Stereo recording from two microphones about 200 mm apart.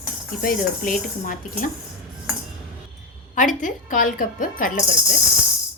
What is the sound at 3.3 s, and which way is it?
Speech, 40° left (ahead or behind).